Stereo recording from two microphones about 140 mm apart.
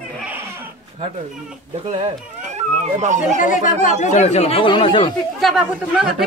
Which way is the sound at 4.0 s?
55° left (ahead or behind).